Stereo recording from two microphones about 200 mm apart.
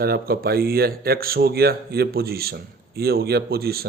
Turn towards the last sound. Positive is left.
turn(degrees=-50)  # may be behind; listen again after turning